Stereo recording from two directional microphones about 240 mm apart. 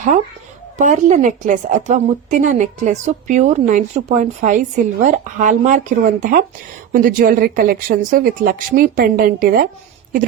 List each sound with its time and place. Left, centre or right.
0.8 s a woman's voice: right